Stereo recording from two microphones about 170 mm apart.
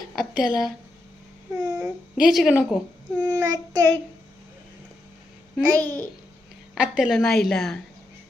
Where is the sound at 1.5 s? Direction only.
5° right (ahead or behind).